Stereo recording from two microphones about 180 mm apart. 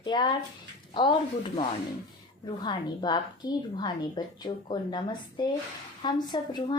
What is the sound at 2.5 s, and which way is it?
A woman's voice, 25° left (ahead or behind).